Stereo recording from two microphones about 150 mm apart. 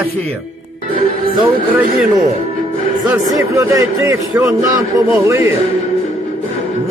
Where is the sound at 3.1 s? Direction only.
20° right (ahead or behind).